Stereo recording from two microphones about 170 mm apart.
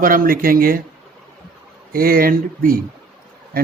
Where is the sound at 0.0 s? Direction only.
55° right (ahead or behind).